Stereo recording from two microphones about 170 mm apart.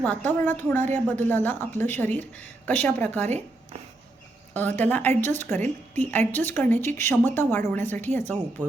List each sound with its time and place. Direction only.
0.3 s speech: 10° left (ahead or behind)
3.2 s speech: 40° right (ahead or behind)
4.5 s speech: 10° left (ahead or behind)